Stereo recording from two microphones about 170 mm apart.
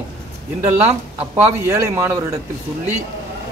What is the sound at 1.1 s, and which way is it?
A man's voice, 10° right (ahead or behind).